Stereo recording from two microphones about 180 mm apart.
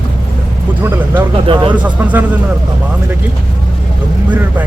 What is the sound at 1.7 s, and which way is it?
Speech, 10° right (ahead or behind).